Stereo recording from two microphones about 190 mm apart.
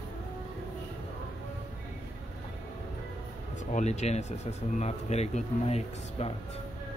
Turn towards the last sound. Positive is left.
turn(degrees=35)  # may be behind; listen again after turning